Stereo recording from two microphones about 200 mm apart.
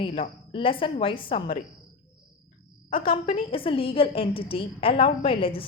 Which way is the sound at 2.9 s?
25° left (ahead or behind).